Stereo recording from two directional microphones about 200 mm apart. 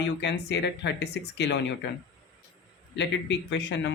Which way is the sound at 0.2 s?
60° left (ahead or behind).